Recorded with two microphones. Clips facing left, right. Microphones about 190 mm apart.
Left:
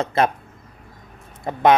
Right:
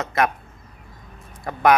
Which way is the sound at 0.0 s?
30° left (ahead or behind).